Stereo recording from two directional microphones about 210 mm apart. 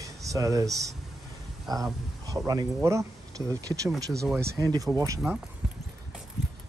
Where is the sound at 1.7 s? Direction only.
15° right (ahead or behind).